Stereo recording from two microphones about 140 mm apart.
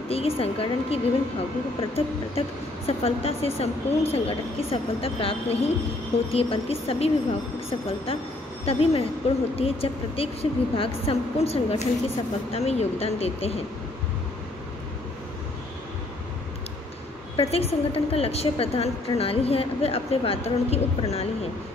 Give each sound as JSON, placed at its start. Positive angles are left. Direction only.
{"t": 0.1, "sound": "a woman's voice", "side_deg": 45}
{"t": 8.6, "sound": "a woman's voice", "side_deg": 45}
{"t": 17.4, "sound": "a woman's voice", "side_deg": 45}